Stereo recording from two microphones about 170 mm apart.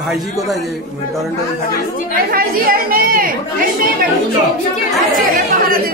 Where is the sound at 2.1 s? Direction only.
60° right (ahead or behind).